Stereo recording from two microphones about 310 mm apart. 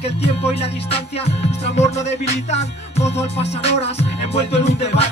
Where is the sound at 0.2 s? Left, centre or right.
Centre.